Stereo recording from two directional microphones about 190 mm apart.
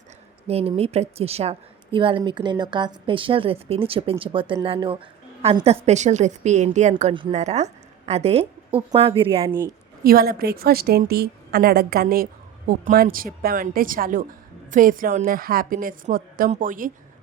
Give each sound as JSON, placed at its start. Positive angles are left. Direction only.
{"t": 0.4, "sound": "a woman's voice", "side_deg": -30}
{"t": 6.9, "sound": "a woman's voice", "side_deg": -25}
{"t": 10.0, "sound": "a woman's voice", "side_deg": -50}